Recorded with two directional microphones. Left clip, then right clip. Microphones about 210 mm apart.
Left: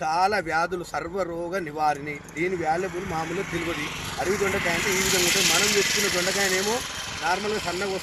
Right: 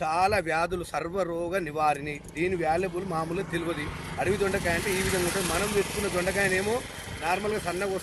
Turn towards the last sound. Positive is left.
turn(degrees=-15)  # may be behind; listen again after turning